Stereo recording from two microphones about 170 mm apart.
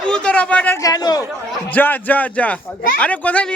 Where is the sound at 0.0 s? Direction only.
5° left (ahead or behind).